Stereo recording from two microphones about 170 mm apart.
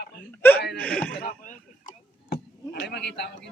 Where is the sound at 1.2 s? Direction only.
55° left (ahead or behind).